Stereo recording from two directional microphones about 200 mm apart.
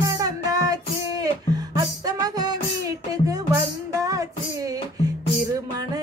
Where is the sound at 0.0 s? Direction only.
15° right (ahead or behind).